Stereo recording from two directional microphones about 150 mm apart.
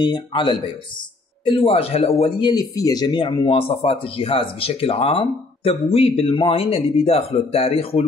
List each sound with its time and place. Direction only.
0.0 s speech: 30° left (ahead or behind)
1.6 s speech: 40° left (ahead or behind)